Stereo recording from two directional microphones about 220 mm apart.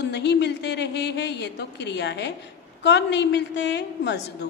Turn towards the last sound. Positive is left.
turn(degrees=50)  # may be behind; listen again after turning